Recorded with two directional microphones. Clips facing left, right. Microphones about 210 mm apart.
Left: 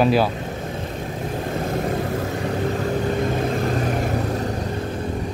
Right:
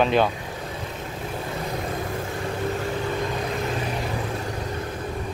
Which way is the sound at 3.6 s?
45° left (ahead or behind).